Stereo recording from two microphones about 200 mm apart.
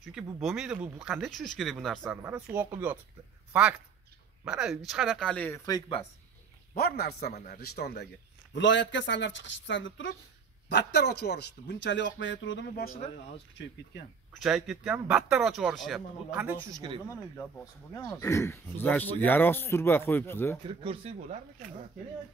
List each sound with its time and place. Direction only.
0.4 s speech: centre (ahead or behind)
2.0 s speech: 10° right (ahead or behind)
4.5 s speech: 5° right (ahead or behind)
6.7 s a man's voice: 50° left (ahead or behind); by 10.1 s 70° left (ahead or behind)
10.7 s a man's voice: 55° left (ahead or behind)
14.4 s speech: 5° right (ahead or behind)
17.9 s speech: 15° left (ahead or behind)
20.6 s speech: 30° right (ahead or behind)